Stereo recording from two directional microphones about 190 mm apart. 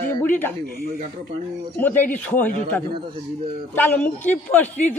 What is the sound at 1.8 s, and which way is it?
Speech, 10° left (ahead or behind).